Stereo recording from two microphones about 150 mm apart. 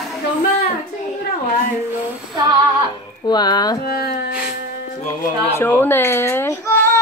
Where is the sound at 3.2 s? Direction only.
25° left (ahead or behind).